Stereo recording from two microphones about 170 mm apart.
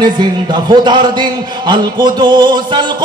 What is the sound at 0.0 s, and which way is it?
A man's voice, 25° right (ahead or behind).